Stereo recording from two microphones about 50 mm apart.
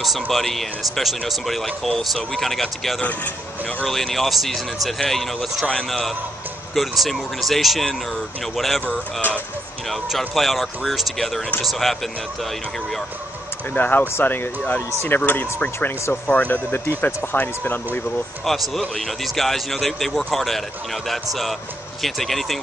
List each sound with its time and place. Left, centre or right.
0.0 s speech: centre
10.1 s speech: centre
13.7 s speech: left
17.0 s speech: left
18.4 s speech: centre